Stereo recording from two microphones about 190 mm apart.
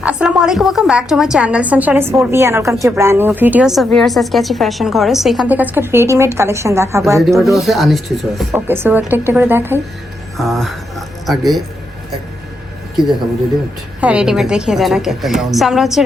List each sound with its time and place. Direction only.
0.0 s a woman's voice: 5° right (ahead or behind)
7.2 s a woman's voice: centre (ahead or behind)
8.5 s a woman's voice: 10° right (ahead or behind)
10.3 s speech: centre (ahead or behind)
14.0 s a woman's voice: 5° right (ahead or behind)